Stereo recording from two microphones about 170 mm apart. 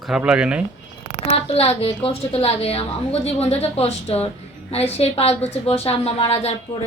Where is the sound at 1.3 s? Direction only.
35° left (ahead or behind).